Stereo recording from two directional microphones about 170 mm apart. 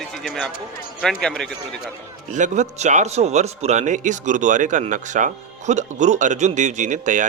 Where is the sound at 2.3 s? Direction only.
45° right (ahead or behind).